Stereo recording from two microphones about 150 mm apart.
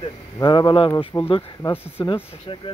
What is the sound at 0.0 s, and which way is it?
Speech, 30° left (ahead or behind).